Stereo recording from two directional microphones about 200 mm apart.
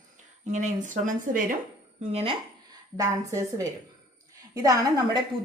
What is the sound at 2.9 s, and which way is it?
Speech, 15° right (ahead or behind).